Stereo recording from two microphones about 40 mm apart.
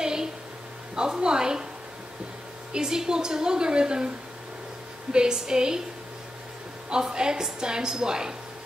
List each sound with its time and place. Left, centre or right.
0.0 s a sound: centre
2.7 s a woman's voice: centre
5.1 s a woman's voice: centre
6.9 s a woman's voice: centre